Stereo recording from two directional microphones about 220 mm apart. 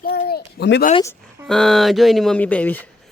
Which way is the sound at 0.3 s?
45° left (ahead or behind).